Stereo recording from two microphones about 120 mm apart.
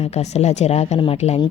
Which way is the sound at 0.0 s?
65° left (ahead or behind).